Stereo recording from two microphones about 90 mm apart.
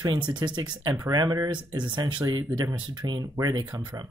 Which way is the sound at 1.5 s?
60° right (ahead or behind).